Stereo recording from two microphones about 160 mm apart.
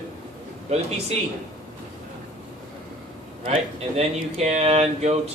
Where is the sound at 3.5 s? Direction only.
40° right (ahead or behind).